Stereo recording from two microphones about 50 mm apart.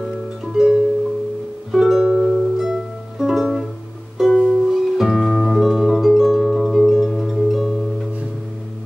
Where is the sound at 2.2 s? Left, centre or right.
Centre.